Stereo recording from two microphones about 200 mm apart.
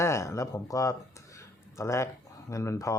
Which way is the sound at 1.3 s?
15° left (ahead or behind).